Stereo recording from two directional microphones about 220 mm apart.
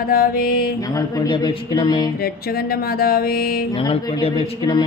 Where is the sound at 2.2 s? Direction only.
45° left (ahead or behind).